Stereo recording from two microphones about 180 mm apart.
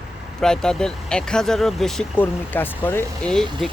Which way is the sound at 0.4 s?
5° left (ahead or behind).